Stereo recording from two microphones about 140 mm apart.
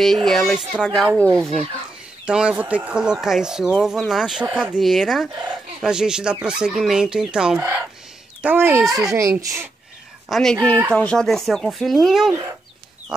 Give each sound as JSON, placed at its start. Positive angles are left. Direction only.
{"t": 0.0, "sound": "speech", "side_deg": 0}
{"t": 2.2, "sound": "a child's voice", "side_deg": -5}
{"t": 10.3, "sound": "speech", "side_deg": 5}